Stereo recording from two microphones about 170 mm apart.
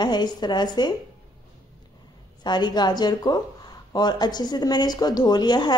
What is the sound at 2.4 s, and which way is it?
Speech, 25° left (ahead or behind).